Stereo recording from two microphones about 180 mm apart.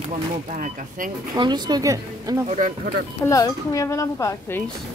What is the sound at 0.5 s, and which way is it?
Speech, 45° right (ahead or behind).